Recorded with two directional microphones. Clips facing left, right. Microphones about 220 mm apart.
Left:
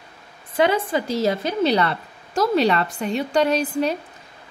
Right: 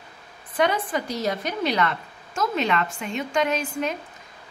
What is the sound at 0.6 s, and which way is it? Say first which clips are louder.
A woman's voice: left 4 dB; 30° left (ahead or behind).